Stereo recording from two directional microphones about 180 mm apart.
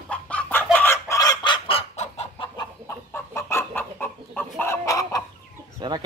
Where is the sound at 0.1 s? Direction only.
5° left (ahead or behind).